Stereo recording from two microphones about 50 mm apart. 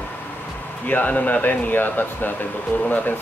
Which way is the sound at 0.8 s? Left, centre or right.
Left.